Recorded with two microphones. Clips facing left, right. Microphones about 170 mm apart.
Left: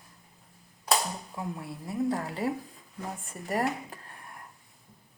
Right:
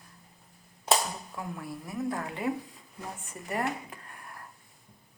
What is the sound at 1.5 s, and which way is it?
Speech, 25° left (ahead or behind).